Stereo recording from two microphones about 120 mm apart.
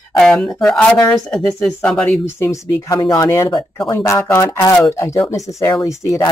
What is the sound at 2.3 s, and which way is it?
Speech, 25° left (ahead or behind).